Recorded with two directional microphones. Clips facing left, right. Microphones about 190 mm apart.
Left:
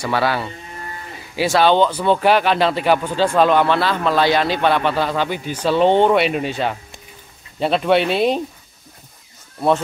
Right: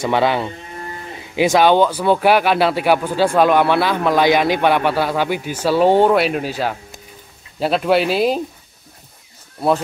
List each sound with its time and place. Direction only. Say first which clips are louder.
0.0 s speech: right 3 dB; 20° right (ahead or behind); by 8.4 s 5° right (ahead or behind)